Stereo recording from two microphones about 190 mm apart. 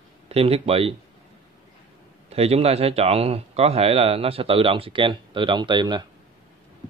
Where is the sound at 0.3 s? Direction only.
30° right (ahead or behind).